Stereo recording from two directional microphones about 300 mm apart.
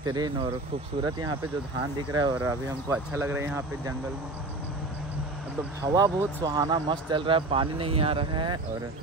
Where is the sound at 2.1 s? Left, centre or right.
Centre.